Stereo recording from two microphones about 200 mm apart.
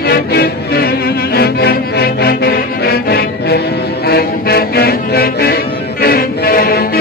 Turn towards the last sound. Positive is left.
turn(degrees=50)  # may be behind; listen again after turning